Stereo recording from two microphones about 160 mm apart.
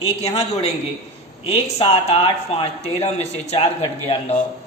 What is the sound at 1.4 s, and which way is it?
A man's voice, 40° left (ahead or behind).